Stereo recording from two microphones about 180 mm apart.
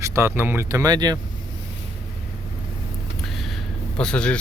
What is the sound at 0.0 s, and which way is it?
Speech, 15° right (ahead or behind).